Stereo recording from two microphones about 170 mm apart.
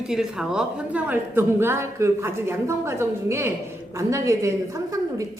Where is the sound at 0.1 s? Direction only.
5° right (ahead or behind).